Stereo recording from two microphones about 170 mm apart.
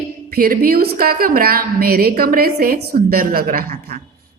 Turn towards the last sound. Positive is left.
turn(degrees=-60)  # may be behind; listen again after turning